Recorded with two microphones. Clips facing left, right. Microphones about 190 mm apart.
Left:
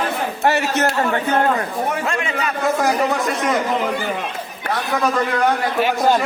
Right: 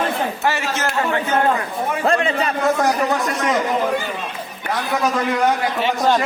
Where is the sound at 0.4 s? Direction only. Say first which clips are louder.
Left 7 dB; 65° left (ahead or behind).